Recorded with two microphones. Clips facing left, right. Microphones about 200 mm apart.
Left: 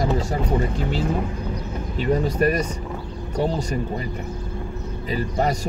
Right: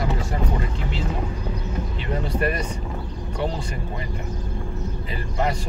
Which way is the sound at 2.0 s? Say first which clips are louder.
Left 6 dB; 40° left (ahead or behind).